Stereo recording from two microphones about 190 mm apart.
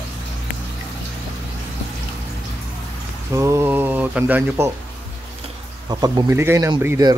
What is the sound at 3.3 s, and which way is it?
Mantra, 15° right (ahead or behind).